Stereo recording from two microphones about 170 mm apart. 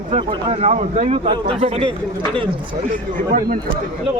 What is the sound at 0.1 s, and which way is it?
Speech, 35° right (ahead or behind).